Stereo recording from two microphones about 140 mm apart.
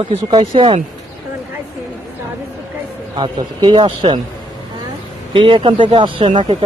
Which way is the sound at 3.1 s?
40° right (ahead or behind).